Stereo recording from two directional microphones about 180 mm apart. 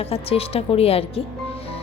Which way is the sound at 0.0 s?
35° left (ahead or behind).